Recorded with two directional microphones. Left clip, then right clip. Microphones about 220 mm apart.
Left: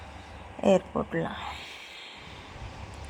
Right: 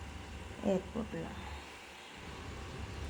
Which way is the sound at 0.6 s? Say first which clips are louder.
Left 12 dB; 35° left (ahead or behind).